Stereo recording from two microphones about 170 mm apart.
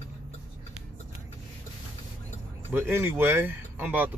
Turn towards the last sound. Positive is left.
turn(degrees=-10)  # may be behind; listen again after turning